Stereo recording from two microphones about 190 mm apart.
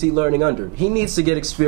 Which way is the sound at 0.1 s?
20° right (ahead or behind).